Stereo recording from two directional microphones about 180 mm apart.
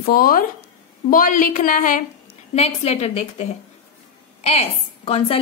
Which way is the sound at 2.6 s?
35° left (ahead or behind).